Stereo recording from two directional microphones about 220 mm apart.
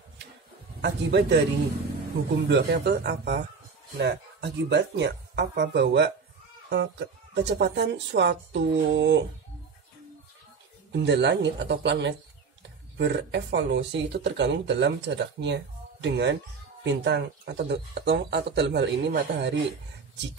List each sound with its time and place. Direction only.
0.7 s a man's voice: 50° right (ahead or behind)
2.4 s speech: 50° right (ahead or behind)
10.9 s speech: 50° right (ahead or behind)